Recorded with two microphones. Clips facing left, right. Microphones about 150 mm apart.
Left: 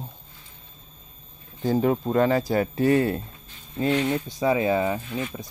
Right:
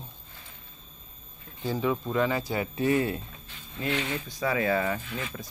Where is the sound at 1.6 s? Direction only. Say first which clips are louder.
Left 6 dB; 45° left (ahead or behind).